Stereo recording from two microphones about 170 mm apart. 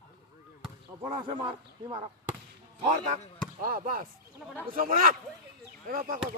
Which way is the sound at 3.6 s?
55° right (ahead or behind).